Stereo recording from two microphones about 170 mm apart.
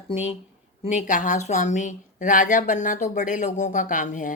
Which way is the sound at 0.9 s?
45° left (ahead or behind).